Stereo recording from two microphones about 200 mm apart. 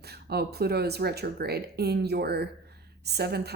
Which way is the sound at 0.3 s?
50° right (ahead or behind).